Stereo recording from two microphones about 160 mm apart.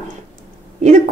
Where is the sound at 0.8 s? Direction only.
50° right (ahead or behind).